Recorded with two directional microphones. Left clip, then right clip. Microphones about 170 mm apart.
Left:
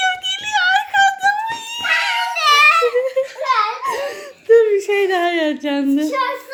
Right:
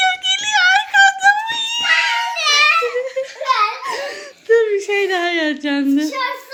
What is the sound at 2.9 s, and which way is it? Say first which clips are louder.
Giggle: left 4 dB; 15° left (ahead or behind).